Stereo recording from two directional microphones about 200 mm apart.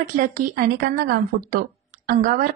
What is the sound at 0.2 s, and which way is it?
Speech, 50° right (ahead or behind).